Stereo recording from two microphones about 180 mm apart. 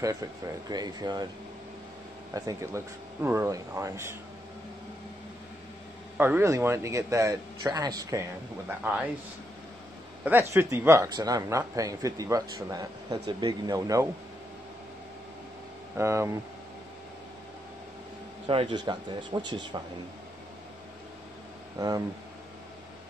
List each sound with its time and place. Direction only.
0.7 s speech: 20° right (ahead or behind)
2.3 s a man's voice: 15° right (ahead or behind)
6.1 s a man's voice: 10° right (ahead or behind)
8.6 s a man's voice: 10° right (ahead or behind)
10.2 s a man's voice: 10° right (ahead or behind)
16.0 s a man's voice: 15° right (ahead or behind)
18.5 s a man's voice: 30° right (ahead or behind)
21.7 s speech: 20° right (ahead or behind)